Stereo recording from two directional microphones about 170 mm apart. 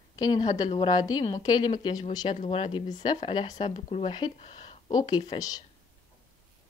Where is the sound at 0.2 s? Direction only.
25° left (ahead or behind).